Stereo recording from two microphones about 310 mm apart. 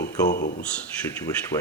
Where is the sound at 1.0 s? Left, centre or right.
Centre.